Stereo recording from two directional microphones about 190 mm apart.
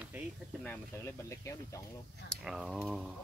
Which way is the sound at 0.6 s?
10° left (ahead or behind).